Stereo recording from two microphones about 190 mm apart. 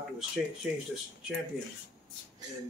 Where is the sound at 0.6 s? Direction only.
5° right (ahead or behind).